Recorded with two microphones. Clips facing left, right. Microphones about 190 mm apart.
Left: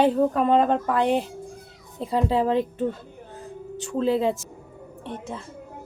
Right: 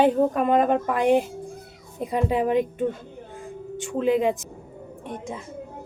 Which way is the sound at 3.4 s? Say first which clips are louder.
Right 1 dB; 35° left (ahead or behind).